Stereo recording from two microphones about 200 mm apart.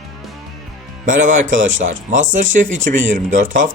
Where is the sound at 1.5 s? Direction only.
70° right (ahead or behind).